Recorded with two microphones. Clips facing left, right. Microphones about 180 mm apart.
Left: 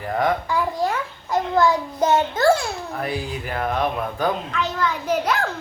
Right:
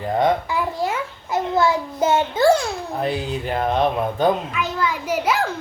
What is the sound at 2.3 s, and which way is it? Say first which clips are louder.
Speech: right 5 dB; 10° right (ahead or behind).